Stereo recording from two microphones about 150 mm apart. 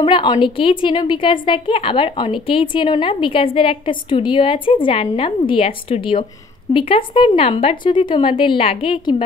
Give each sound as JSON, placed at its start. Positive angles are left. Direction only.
{"t": 0.0, "sound": "a woman's voice", "side_deg": 30}